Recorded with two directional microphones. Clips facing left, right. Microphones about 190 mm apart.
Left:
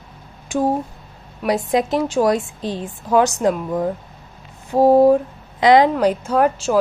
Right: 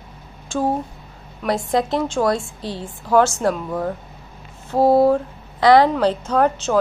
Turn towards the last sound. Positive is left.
turn(degrees=5)  # may be behind; listen again after turning